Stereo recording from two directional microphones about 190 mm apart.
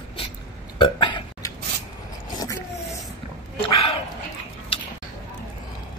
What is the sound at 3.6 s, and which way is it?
Dog, 30° left (ahead or behind).